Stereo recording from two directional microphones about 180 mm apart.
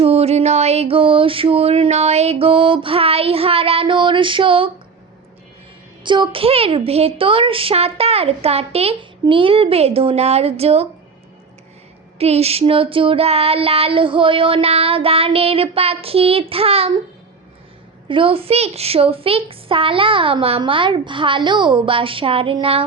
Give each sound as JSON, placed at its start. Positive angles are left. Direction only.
{"t": 0.0, "sound": "a woman's voice", "side_deg": -35}
{"t": 6.0, "sound": "a woman's voice", "side_deg": -25}
{"t": 12.2, "sound": "a woman's voice", "side_deg": -35}
{"t": 18.1, "sound": "a woman's voice", "side_deg": -30}